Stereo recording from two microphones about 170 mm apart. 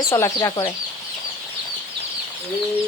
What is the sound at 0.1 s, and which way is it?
Speech, 20° left (ahead or behind).